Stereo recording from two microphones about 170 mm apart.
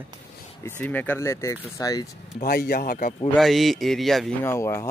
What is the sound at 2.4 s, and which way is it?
Speech, 60° left (ahead or behind).